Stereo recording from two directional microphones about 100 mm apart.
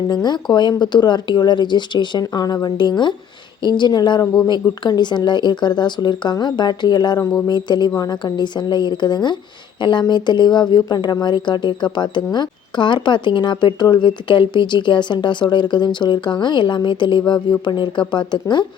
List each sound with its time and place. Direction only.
0.1 s a woman's voice: 45° left (ahead or behind)